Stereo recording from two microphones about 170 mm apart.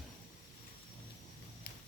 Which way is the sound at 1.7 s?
65° left (ahead or behind).